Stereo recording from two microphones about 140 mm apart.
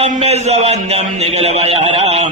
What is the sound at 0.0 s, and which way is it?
A man's voice, 50° right (ahead or behind).